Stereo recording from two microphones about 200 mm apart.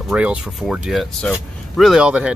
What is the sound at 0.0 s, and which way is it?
Speech, 5° right (ahead or behind).